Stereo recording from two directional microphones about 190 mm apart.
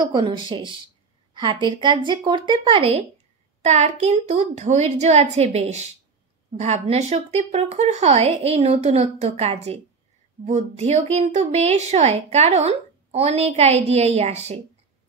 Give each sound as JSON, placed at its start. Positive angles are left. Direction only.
{"t": 0.1, "sound": "a woman's voice", "side_deg": -25}